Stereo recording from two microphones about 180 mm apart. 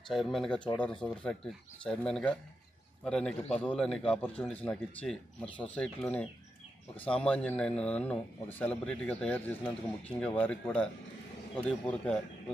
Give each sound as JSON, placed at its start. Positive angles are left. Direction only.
{"t": 0.1, "sound": "a man's voice", "side_deg": 0}
{"t": 10.1, "sound": "speech", "side_deg": 30}
{"t": 10.4, "sound": "a man's voice", "side_deg": 5}